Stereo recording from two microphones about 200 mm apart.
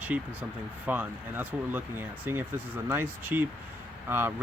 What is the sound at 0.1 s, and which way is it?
Speech, 10° right (ahead or behind).